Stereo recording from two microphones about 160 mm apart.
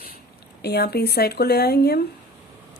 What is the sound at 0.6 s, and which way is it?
Speech, 90° left.